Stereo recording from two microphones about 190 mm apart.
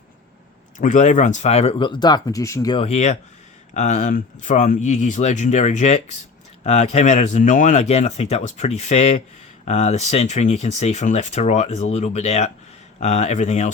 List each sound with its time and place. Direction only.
0.8 s speech: 40° left (ahead or behind); by 2.8 s 20° left (ahead or behind)
2.8 s speech: 35° left (ahead or behind)